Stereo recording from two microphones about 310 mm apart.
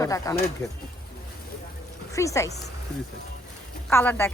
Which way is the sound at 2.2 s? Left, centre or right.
Centre.